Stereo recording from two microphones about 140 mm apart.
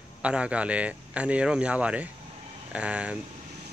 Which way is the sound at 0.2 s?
10° right (ahead or behind).